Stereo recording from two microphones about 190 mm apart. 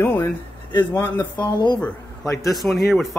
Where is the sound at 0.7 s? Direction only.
10° left (ahead or behind).